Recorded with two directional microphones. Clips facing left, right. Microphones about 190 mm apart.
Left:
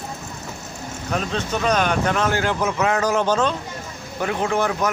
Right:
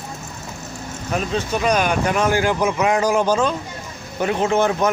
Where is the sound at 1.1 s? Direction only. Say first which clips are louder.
Right 2 dB; 5° right (ahead or behind).